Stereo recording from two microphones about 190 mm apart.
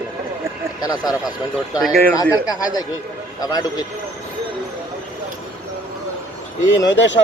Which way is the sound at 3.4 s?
20° left (ahead or behind).